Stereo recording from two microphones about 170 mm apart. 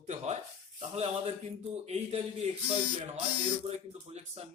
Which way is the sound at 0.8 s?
35° right (ahead or behind).